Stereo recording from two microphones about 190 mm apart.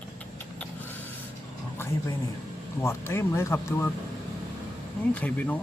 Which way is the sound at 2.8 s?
15° left (ahead or behind).